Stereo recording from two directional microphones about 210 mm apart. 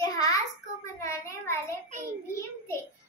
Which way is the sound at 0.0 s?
15° left (ahead or behind).